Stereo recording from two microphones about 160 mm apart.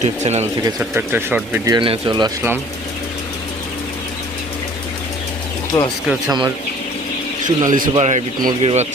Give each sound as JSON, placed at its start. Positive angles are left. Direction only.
{"t": 0.0, "sound": "a man's voice", "side_deg": -45}
{"t": 0.8, "sound": "speech", "side_deg": -10}
{"t": 1.7, "sound": "speech", "side_deg": -30}
{"t": 5.7, "sound": "speech", "side_deg": 25}
{"t": 6.1, "sound": "speech", "side_deg": 0}
{"t": 7.4, "sound": "a man's voice", "side_deg": -55}